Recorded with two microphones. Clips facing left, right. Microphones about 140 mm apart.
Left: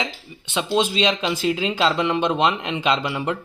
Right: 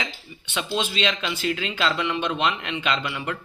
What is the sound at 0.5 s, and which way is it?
Speech, 35° left (ahead or behind).